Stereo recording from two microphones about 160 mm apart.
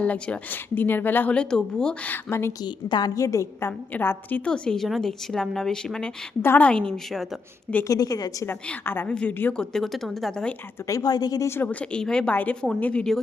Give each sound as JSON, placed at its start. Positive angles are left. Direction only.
{"t": 0.0, "sound": "speech", "side_deg": 10}
{"t": 7.9, "sound": "a woman's voice", "side_deg": 25}
{"t": 8.6, "sound": "speech", "side_deg": 10}
{"t": 10.8, "sound": "speech", "side_deg": 20}